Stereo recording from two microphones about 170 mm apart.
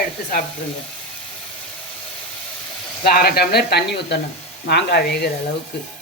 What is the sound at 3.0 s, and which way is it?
Speech, 65° left (ahead or behind).